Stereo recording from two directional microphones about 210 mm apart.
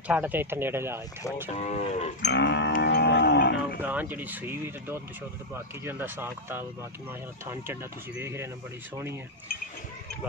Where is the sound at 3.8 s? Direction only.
10° right (ahead or behind).